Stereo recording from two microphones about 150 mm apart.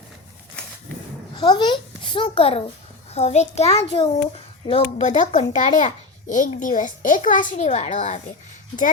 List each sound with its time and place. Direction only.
1.4 s a child's voice: 30° left (ahead or behind)
4.9 s a child's voice: 55° left (ahead or behind)